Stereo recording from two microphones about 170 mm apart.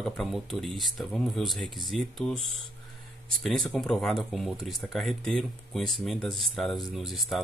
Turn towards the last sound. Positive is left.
turn(degrees=0)  # may be behind; listen again after turning